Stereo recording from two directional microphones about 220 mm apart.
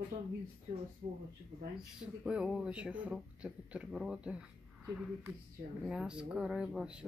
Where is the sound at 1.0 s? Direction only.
30° right (ahead or behind).